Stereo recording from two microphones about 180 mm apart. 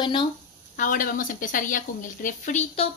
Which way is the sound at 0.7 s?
50° left (ahead or behind).